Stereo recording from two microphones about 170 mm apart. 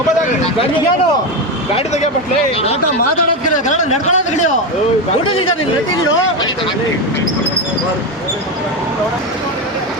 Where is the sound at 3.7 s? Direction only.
45° left (ahead or behind).